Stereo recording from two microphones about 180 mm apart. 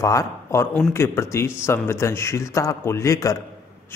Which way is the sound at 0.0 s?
15° left (ahead or behind).